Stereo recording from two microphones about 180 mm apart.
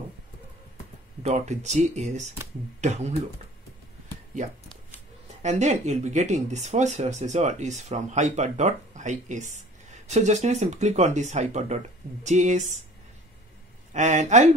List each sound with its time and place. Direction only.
1.2 s speech: 40° right (ahead or behind)
5.4 s speech: 40° right (ahead or behind)
13.9 s speech: 40° right (ahead or behind)